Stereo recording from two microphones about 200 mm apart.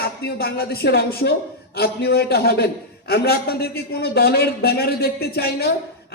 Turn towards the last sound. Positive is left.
turn(degrees=50)  # may be behind; listen again after turning